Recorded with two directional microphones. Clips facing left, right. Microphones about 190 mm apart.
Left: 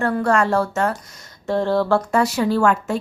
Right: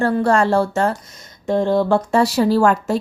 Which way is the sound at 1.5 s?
15° right (ahead or behind).